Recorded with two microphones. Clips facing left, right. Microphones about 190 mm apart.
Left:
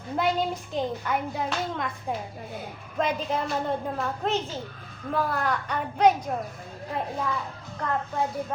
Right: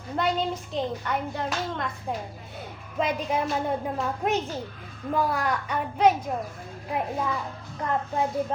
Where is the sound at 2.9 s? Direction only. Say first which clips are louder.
Right 1 dB; 10° right (ahead or behind).